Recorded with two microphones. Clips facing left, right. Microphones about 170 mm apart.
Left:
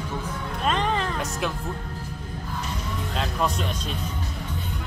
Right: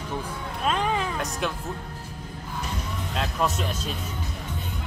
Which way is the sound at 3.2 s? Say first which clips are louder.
Even; centre (ahead or behind).